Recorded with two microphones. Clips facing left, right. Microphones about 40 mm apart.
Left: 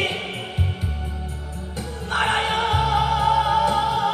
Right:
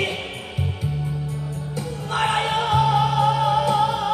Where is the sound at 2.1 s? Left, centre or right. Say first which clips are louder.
Even; left.